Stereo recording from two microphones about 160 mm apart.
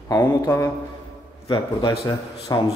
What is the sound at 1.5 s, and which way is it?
A man's voice, 30° left (ahead or behind).